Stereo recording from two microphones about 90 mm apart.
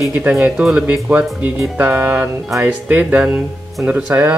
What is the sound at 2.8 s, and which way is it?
Speech, 15° right (ahead or behind).